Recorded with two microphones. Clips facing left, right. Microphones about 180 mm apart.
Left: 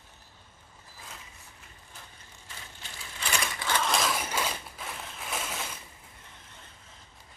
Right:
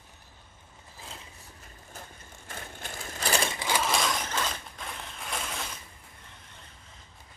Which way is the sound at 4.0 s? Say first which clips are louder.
Even; 5° left (ahead or behind).